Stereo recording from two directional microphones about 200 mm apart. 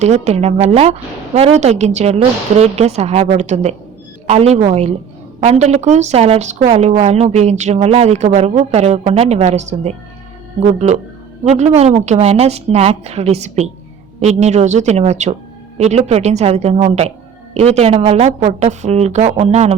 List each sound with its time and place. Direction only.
0.0 s a woman's voice: 35° right (ahead or behind)